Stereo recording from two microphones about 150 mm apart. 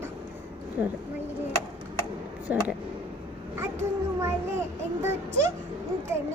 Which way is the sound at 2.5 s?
10° right (ahead or behind).